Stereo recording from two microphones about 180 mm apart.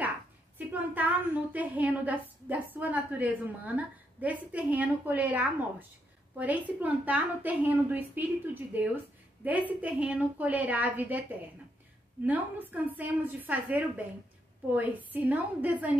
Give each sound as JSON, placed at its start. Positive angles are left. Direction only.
{"t": 0.6, "sound": "a woman's voice", "side_deg": -10}